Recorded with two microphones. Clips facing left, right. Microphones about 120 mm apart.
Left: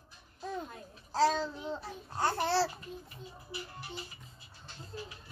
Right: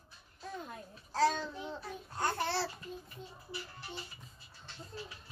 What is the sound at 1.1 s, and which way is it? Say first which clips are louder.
Child singing: left 2 dB; 30° left (ahead or behind).